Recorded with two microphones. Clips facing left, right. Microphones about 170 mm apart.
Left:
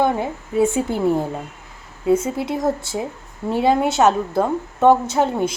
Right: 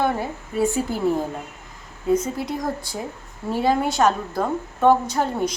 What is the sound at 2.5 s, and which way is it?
A woman's voice, 25° left (ahead or behind).